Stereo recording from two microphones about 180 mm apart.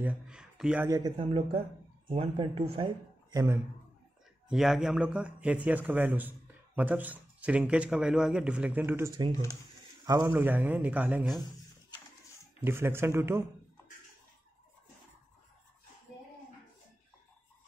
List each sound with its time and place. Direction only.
0.0 s speech: 5° right (ahead or behind)
0.8 s speech: 20° right (ahead or behind)
4.5 s a man's voice: centre (ahead or behind)
12.6 s a man's voice: 15° right (ahead or behind)